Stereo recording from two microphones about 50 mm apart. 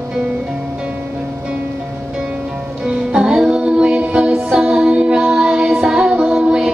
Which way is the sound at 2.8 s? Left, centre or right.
Centre.